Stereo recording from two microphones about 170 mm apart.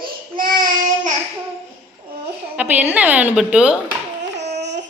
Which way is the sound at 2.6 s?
10° right (ahead or behind).